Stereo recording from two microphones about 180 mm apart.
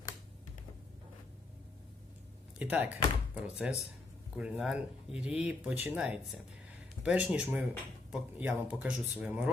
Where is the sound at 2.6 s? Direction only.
10° right (ahead or behind).